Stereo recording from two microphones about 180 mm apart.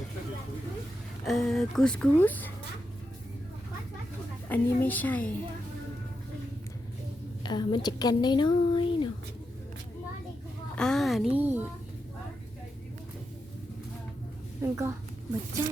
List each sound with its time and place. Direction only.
1.2 s speech: centre (ahead or behind)
4.4 s speech: 10° left (ahead or behind)
7.4 s a woman's voice: 25° left (ahead or behind)
10.8 s speech: centre (ahead or behind)
14.6 s a woman's voice: 15° right (ahead or behind)